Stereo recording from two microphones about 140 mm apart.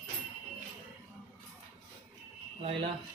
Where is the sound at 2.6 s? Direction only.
40° right (ahead or behind).